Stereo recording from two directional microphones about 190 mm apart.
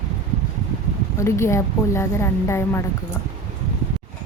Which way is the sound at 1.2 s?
15° left (ahead or behind).